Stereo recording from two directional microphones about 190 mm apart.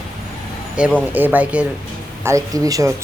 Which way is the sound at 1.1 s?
10° right (ahead or behind).